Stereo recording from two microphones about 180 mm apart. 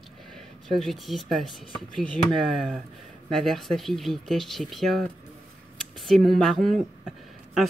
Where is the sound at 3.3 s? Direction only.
Centre (ahead or behind).